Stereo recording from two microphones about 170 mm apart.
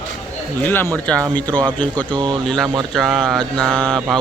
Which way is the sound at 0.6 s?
10° left (ahead or behind).